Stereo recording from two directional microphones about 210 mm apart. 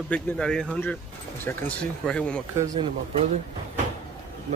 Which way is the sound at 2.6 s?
25° right (ahead or behind).